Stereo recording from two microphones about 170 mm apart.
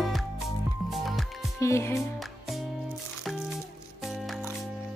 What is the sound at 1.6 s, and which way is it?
Speech, 15° left (ahead or behind).